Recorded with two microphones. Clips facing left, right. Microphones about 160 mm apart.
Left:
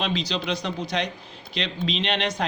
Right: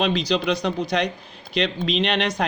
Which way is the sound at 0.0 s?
55° right (ahead or behind).